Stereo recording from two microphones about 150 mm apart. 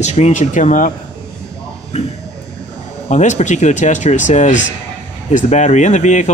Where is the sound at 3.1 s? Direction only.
50° left (ahead or behind).